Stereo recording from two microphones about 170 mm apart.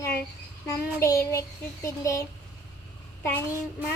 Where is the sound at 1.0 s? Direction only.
20° left (ahead or behind).